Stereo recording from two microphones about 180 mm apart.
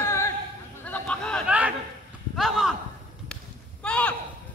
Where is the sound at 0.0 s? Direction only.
15° left (ahead or behind).